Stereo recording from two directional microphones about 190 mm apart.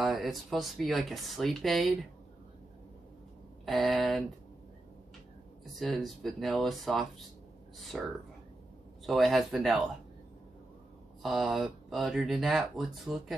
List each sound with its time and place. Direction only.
0.0 s speech: centre (ahead or behind)
3.6 s speech: centre (ahead or behind)
5.8 s speech: centre (ahead or behind)
11.2 s speech: centre (ahead or behind)